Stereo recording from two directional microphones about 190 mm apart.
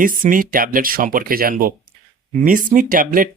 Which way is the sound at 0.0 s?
45° right (ahead or behind).